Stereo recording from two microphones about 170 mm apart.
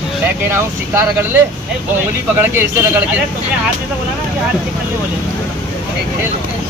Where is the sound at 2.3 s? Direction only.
10° right (ahead or behind).